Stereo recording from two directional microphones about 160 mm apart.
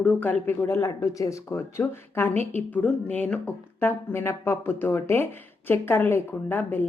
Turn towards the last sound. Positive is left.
turn(degrees=10)  # may be behind; listen again after turning